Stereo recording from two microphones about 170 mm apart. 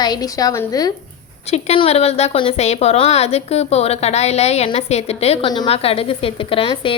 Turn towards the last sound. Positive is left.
turn(degrees=30)  # may be behind; listen again after turning